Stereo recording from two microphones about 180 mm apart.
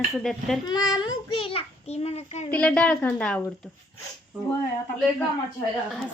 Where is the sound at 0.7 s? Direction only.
20° left (ahead or behind); by 2.5 s 35° left (ahead or behind).